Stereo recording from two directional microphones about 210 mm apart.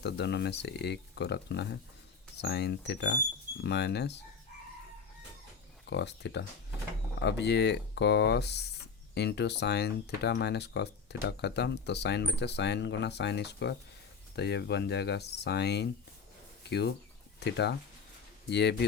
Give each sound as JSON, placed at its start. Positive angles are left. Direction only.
{"t": 0.0, "sound": "speech", "side_deg": 55}
{"t": 5.8, "sound": "speech", "side_deg": 55}